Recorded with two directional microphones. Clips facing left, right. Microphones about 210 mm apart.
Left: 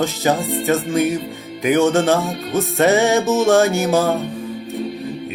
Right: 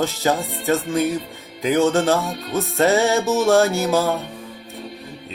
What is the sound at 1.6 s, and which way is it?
Speech, 20° left (ahead or behind).